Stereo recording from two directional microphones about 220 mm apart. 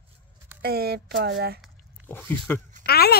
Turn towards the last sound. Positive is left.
turn(degrees=45)  # may be behind; listen again after turning